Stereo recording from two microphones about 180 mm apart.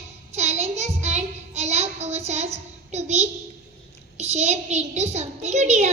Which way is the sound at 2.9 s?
35° right (ahead or behind).